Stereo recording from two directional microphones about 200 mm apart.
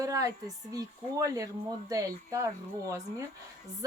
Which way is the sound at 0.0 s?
15° right (ahead or behind).